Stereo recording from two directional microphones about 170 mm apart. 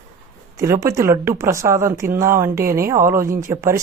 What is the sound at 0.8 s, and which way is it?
Speech, 15° right (ahead or behind).